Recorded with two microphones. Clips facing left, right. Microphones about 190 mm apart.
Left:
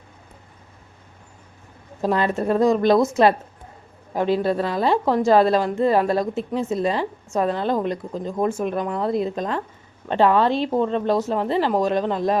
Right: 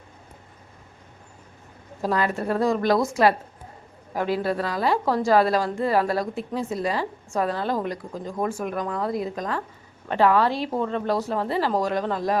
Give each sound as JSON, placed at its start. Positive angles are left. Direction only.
{"t": 2.0, "sound": "speech", "side_deg": 25}